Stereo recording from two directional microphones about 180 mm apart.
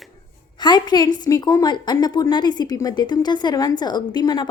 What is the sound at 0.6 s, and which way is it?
A woman's voice, 25° left (ahead or behind).